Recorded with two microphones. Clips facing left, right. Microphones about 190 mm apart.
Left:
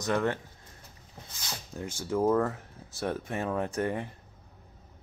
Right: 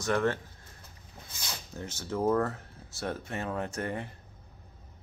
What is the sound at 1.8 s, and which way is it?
Speech, 15° left (ahead or behind).